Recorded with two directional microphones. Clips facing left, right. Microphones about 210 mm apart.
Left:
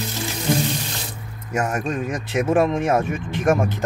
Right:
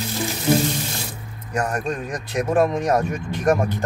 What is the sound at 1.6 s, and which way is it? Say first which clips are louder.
Speech: left 1 dB; 5° left (ahead or behind).